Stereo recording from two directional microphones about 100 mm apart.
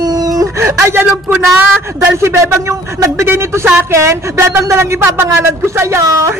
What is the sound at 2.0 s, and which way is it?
A man's voice, 30° right (ahead or behind).